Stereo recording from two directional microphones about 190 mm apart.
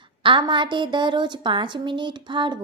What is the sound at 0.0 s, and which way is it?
Speech, 25° right (ahead or behind).